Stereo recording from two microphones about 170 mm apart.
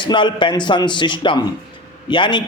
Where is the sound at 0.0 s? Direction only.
25° left (ahead or behind).